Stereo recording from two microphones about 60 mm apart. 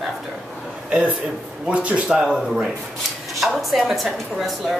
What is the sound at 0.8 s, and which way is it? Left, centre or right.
A man's voice, centre.